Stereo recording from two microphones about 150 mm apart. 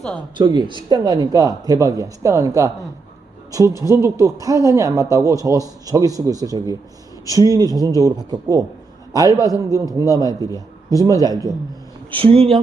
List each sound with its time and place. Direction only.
0.3 s speech: 30° right (ahead or behind)
3.8 s speech: 20° right (ahead or behind)
12.1 s speech: 40° right (ahead or behind)